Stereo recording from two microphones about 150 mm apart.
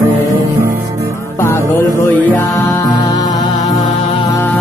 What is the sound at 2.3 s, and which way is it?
Music, 15° left (ahead or behind).